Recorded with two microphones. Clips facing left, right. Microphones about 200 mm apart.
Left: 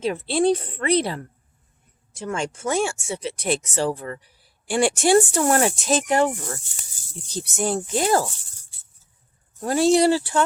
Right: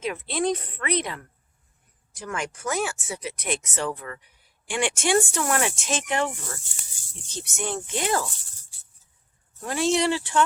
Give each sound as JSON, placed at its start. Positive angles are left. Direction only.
{"t": 0.0, "sound": "speech", "side_deg": 30}
{"t": 9.6, "sound": "speech", "side_deg": 35}